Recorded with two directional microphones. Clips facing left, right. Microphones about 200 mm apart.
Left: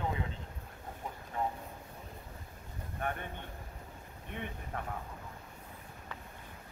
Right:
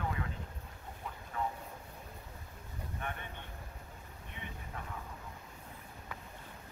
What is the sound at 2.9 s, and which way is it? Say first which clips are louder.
Vehicle: left 6 dB; 45° left (ahead or behind).